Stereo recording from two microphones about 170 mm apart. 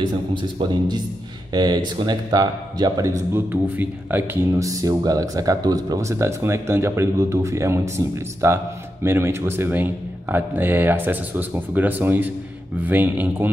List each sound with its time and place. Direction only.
0.0 s speech: 30° right (ahead or behind); by 13.5 s 10° right (ahead or behind)